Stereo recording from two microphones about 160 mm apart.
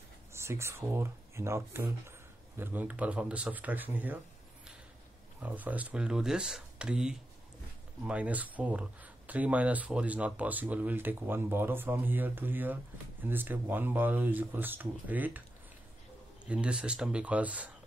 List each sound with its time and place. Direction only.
0.3 s speech: 15° right (ahead or behind)
5.4 s speech: 10° right (ahead or behind)
16.4 s speech: 5° right (ahead or behind)